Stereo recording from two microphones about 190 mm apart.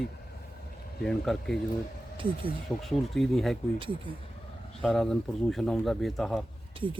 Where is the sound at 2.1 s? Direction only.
25° right (ahead or behind).